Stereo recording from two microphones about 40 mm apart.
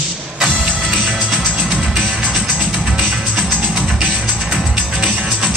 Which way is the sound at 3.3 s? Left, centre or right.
Centre.